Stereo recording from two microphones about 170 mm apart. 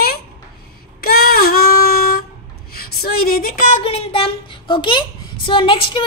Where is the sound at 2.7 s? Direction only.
65° left (ahead or behind).